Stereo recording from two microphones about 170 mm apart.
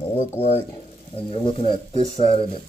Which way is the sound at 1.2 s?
30° left (ahead or behind).